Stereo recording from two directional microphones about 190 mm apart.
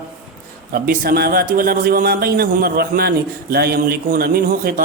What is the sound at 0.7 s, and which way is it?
A man's voice, 50° right (ahead or behind).